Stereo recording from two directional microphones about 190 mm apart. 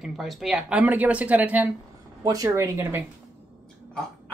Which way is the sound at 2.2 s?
20° right (ahead or behind).